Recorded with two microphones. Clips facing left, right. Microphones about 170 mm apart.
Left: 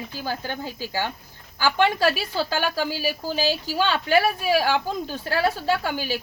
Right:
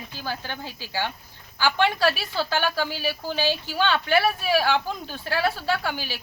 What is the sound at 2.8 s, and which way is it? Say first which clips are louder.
Speech: left 2 dB; 10° left (ahead or behind).